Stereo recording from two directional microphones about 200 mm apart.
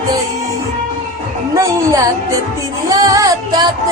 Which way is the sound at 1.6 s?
15° right (ahead or behind).